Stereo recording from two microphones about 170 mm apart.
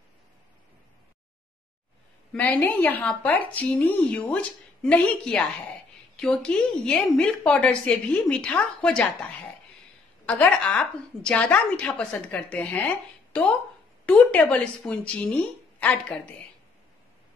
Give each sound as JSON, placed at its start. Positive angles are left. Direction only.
{"t": 2.3, "sound": "a woman's voice", "side_deg": 10}
{"t": 10.2, "sound": "a woman's voice", "side_deg": 5}